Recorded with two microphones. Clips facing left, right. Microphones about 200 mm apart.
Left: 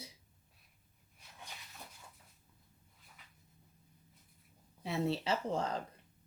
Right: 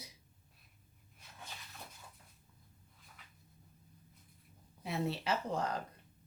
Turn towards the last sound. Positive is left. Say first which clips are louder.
# left 1 dB
turn(degrees=25)  # may be behind; listen again after turning